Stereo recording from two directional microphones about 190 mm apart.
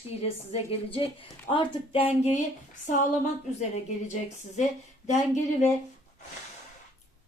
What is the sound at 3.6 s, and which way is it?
A woman's voice, 40° left (ahead or behind).